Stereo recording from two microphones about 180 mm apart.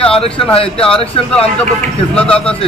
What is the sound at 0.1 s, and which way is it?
A man's voice, 30° left (ahead or behind).